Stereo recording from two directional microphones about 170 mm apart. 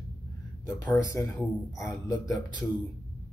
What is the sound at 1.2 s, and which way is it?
Speech, 15° left (ahead or behind).